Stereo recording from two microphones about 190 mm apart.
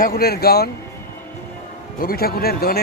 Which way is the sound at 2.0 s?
50° left (ahead or behind).